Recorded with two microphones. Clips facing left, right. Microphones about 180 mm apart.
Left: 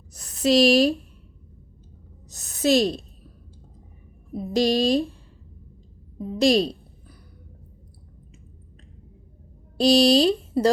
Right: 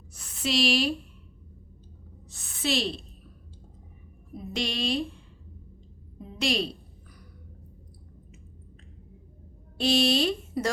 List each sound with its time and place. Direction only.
0.1 s a woman's voice: 40° left (ahead or behind)
2.3 s a sound: 40° left (ahead or behind)
4.5 s speech: 35° left (ahead or behind)
6.2 s speech: 35° left (ahead or behind)
9.7 s speech: 35° left (ahead or behind)